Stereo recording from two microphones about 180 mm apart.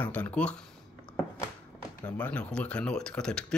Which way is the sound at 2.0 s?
10° left (ahead or behind).